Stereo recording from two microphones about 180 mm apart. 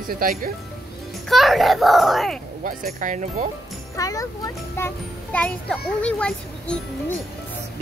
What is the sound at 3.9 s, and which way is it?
A child's voice, 20° left (ahead or behind).